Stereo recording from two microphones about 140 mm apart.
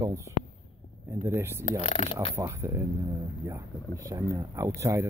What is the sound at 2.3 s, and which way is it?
Speech, 20° right (ahead or behind).